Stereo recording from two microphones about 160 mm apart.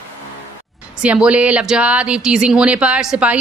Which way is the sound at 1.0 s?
5° right (ahead or behind).